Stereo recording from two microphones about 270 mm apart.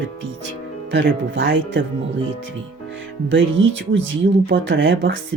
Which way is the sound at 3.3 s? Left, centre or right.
Right.